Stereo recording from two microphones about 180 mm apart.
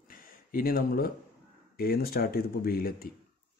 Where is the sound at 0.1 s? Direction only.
50° left (ahead or behind).